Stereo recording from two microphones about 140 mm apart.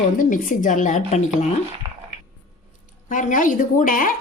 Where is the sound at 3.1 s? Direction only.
65° left (ahead or behind).